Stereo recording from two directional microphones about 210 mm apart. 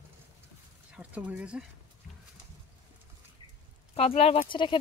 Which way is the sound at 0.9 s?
5° right (ahead or behind).